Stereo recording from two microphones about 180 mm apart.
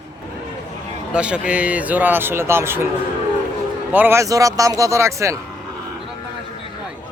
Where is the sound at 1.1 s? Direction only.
5° right (ahead or behind).